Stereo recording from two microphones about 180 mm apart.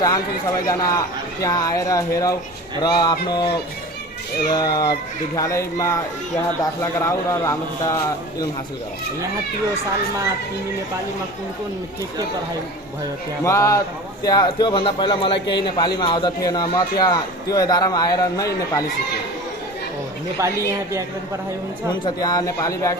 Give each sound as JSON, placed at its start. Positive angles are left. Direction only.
{"t": 0.7, "sound": "a man's voice", "side_deg": 20}
{"t": 13.4, "sound": "a man's voice", "side_deg": 15}
{"t": 20.4, "sound": "speech", "side_deg": -15}
{"t": 22.0, "sound": "a man's voice", "side_deg": 20}